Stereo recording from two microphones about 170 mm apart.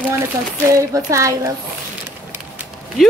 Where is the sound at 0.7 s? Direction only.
20° right (ahead or behind).